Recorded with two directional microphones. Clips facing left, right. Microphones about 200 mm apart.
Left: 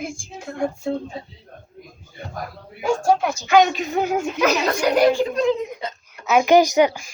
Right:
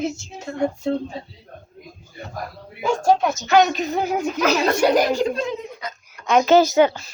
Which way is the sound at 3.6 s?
40° right (ahead or behind).